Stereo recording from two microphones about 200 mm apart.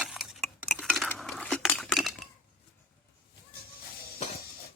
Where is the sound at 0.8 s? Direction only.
Centre (ahead or behind).